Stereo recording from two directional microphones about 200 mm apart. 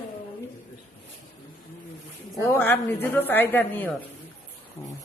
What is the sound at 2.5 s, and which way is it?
Speech, 10° left (ahead or behind).